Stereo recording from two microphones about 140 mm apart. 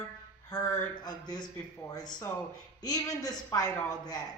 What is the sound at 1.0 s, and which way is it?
A woman's voice, 30° left (ahead or behind).